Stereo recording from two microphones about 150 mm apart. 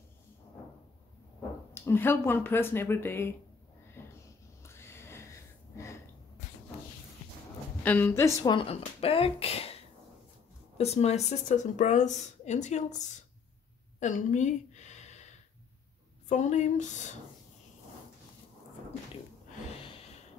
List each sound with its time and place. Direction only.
1.7 s speech: 15° left (ahead or behind)
4.0 s sniff: 15° left (ahead or behind)
4.6 s a sound: 15° left (ahead or behind)
7.8 s speech: 15° left (ahead or behind)
8.5 s speech: 40° left (ahead or behind)
10.8 s speech: 45° left (ahead or behind)
13.9 s a sound: 55° left (ahead or behind)
16.3 s speech: 50° left (ahead or behind)